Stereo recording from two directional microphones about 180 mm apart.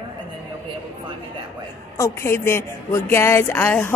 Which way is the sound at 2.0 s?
15° left (ahead or behind).